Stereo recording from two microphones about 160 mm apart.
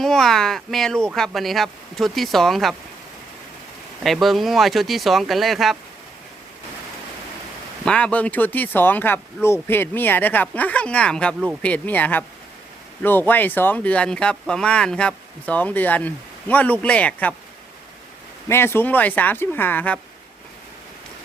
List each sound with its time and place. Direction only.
0.0 s speech: centre (ahead or behind)
4.0 s speech: centre (ahead or behind)
7.9 s speech: 5° left (ahead or behind)
18.4 s speech: 15° left (ahead or behind)